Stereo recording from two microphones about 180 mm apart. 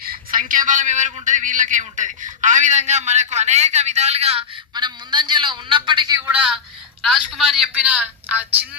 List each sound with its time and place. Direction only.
0.0 s a man's voice: 50° right (ahead or behind); by 6.1 s 25° right (ahead or behind)
6.1 s a woman's voice: 10° right (ahead or behind)